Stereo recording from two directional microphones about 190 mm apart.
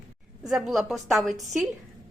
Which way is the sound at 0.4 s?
Centre (ahead or behind).